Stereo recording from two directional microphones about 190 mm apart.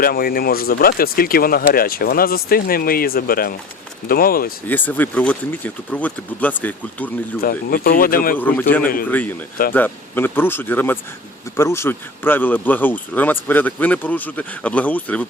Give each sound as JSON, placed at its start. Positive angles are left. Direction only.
{"t": 0.0, "sound": "speech", "side_deg": 50}
{"t": 4.7, "sound": "speech", "side_deg": 10}
{"t": 7.4, "sound": "speech", "side_deg": 50}
{"t": 8.4, "sound": "speech", "side_deg": 10}